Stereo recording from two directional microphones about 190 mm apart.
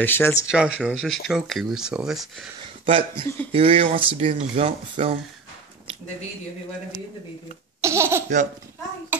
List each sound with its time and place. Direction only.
0.0 s speech: 10° left (ahead or behind)
0.5 s speech: 5° right (ahead or behind)
2.8 s speech: 25° right (ahead or behind)
7.8 s baby laughter: 15° right (ahead or behind)
9.1 s hands: 10° right (ahead or behind)